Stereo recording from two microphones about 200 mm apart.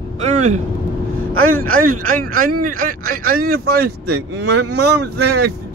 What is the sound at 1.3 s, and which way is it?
Speech, 90° right.